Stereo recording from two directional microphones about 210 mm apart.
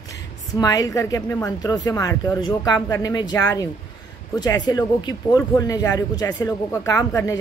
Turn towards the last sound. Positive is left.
turn(degrees=15)  # may be behind; listen again after turning